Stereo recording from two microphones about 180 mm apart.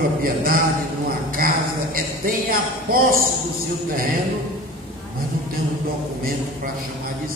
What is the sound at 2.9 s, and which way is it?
Speech, 55° right (ahead or behind).